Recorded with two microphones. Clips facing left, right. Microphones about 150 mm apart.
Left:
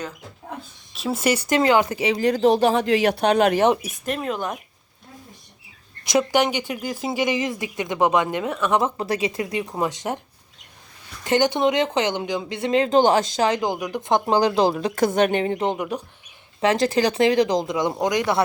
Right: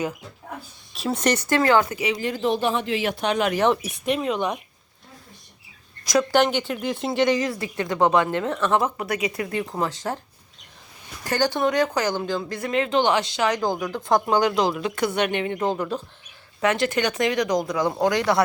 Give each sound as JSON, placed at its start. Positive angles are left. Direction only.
{"t": 0.9, "sound": "a woman's voice", "side_deg": 0}
{"t": 1.9, "sound": "a woman's voice", "side_deg": 30}
{"t": 2.1, "sound": "speech", "side_deg": 40}
{"t": 2.8, "sound": "speech", "side_deg": 80}
{"t": 3.2, "sound": "speech", "side_deg": 35}
{"t": 4.0, "sound": "speech", "side_deg": 0}
{"t": 6.3, "sound": "a woman's voice", "side_deg": 10}
{"t": 7.3, "sound": "a woman's voice", "side_deg": 20}
{"t": 9.0, "sound": "a woman's voice", "side_deg": 30}
{"t": 11.2, "sound": "a woman's voice", "side_deg": 20}
{"t": 12.5, "sound": "speech", "side_deg": 30}
{"t": 13.5, "sound": "speech", "side_deg": 15}
{"t": 15.5, "sound": "a woman's voice", "side_deg": 20}
{"t": 16.6, "sound": "a woman's voice", "side_deg": 30}